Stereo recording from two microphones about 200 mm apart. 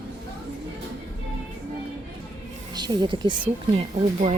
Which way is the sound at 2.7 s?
20° right (ahead or behind).